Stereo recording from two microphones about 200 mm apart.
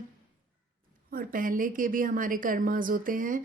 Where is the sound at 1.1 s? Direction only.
45° right (ahead or behind).